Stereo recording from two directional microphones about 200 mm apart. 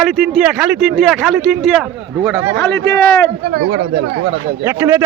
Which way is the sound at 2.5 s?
15° left (ahead or behind).